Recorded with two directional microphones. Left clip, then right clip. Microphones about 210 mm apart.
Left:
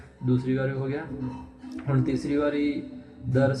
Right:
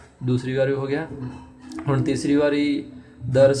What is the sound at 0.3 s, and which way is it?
Speech, 20° right (ahead or behind).